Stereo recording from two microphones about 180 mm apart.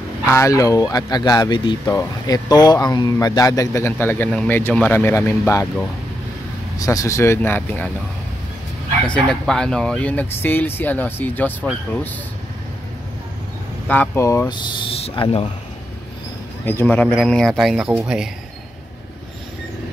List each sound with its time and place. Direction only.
0.3 s speech: 15° left (ahead or behind)
9.0 s speech: 5° left (ahead or behind)
13.8 s speech: 10° left (ahead or behind); by 15.5 s 30° left (ahead or behind)
16.6 s speech: 10° left (ahead or behind)